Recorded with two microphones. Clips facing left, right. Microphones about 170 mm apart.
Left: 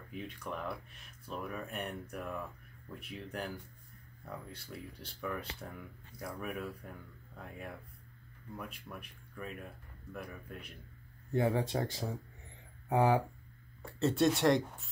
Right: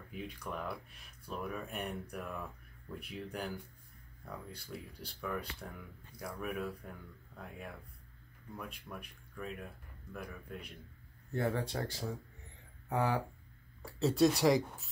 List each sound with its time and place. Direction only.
0.1 s speech: centre (ahead or behind)
11.3 s speech: 15° left (ahead or behind)
13.8 s speech: centre (ahead or behind)